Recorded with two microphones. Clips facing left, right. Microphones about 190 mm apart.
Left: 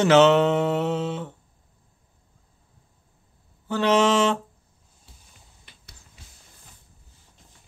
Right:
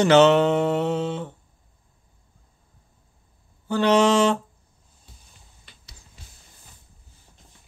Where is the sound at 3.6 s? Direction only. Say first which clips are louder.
Right 2 dB; centre (ahead or behind).